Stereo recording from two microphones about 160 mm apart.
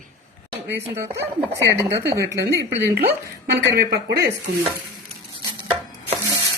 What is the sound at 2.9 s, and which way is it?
Speech, 75° right (ahead or behind).